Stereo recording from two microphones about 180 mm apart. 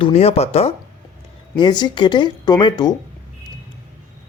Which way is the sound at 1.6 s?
25° left (ahead or behind).